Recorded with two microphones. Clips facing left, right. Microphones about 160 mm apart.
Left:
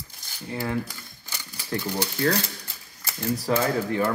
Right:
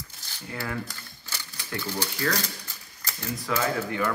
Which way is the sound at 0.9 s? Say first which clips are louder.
Even; 10° left (ahead or behind).